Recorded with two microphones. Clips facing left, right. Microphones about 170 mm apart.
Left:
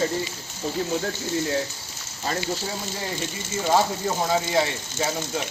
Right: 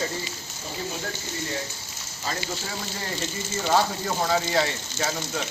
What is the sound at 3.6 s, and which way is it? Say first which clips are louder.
Speech: left 2 dB; 10° left (ahead or behind).